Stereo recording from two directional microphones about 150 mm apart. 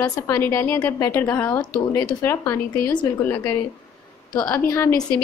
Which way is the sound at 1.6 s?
25° left (ahead or behind).